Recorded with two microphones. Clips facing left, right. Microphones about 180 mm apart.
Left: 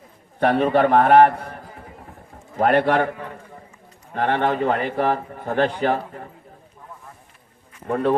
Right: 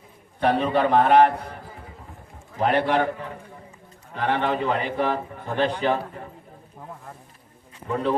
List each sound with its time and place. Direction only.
0.3 s a man's voice: 50° left (ahead or behind)
2.6 s a man's voice: 50° left (ahead or behind)
4.1 s a man's voice: 60° left (ahead or behind)
7.9 s speech: 55° left (ahead or behind)